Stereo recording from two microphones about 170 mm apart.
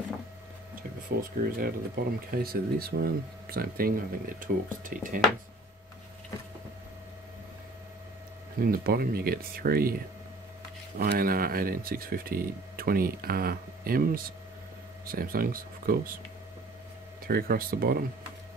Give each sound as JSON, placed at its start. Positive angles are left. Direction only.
{"t": 1.0, "sound": "speech", "side_deg": -60}
{"t": 8.5, "sound": "speech", "side_deg": -60}
{"t": 17.3, "sound": "speech", "side_deg": -60}